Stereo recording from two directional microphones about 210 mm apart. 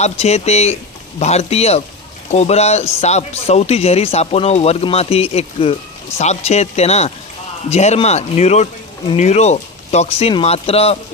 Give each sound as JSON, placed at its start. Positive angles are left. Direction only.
{"t": 0.0, "sound": "speech", "side_deg": 30}